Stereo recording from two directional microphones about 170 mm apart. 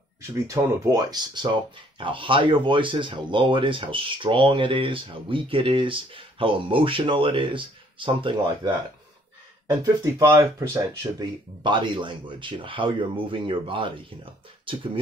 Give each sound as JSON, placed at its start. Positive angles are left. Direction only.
{"t": 0.3, "sound": "speech", "side_deg": -20}
{"t": 9.7, "sound": "speech", "side_deg": -15}